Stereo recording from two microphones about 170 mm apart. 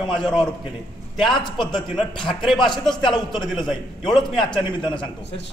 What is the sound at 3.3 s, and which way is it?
A man's voice, centre (ahead or behind).